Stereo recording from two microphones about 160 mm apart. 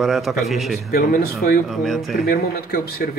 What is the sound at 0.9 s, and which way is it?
Speech, 70° left (ahead or behind).